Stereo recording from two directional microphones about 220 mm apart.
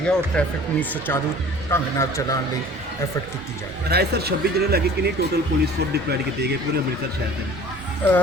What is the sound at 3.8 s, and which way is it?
Speech, 45° right (ahead or behind).